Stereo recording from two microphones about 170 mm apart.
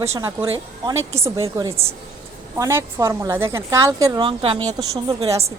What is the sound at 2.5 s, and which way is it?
A woman's voice, 15° right (ahead or behind).